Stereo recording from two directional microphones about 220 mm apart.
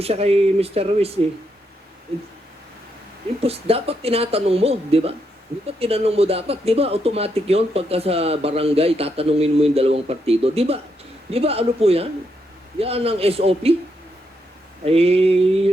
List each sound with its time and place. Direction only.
0.0 s speech: 25° right (ahead or behind)
3.4 s speech: 25° right (ahead or behind)
14.8 s speech: 25° right (ahead or behind)